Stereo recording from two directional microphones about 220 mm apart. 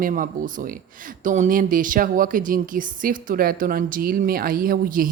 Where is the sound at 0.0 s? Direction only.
40° right (ahead or behind).